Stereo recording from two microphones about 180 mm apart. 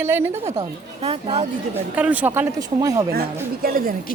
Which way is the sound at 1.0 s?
35° right (ahead or behind).